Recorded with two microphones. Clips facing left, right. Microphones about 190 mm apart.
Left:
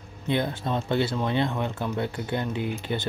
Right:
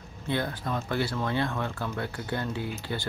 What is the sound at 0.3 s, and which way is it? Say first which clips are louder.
Speech: left 4 dB; 20° left (ahead or behind).